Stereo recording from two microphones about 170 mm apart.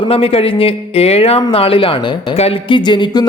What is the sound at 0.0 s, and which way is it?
A man's voice, 35° left (ahead or behind).